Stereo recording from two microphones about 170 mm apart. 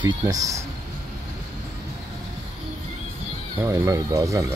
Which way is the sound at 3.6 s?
20° right (ahead or behind).